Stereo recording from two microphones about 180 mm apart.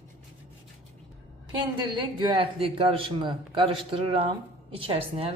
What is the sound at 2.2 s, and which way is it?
A man's voice, 25° right (ahead or behind).